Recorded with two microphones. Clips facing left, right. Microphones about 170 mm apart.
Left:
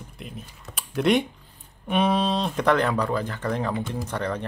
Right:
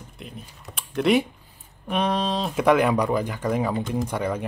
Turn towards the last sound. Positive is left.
turn(degrees=-10)  # may be behind; listen again after turning